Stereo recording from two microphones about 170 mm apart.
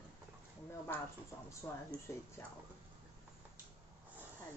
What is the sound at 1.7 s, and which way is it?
Speech, 10° left (ahead or behind).